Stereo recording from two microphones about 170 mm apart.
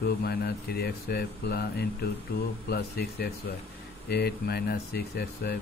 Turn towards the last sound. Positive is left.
turn(degrees=65)  # may be behind; listen again after turning